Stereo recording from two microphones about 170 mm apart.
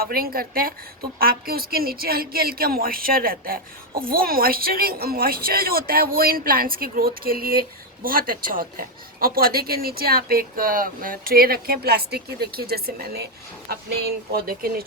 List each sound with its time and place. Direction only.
0.0 s a woman's voice: 60° right (ahead or behind)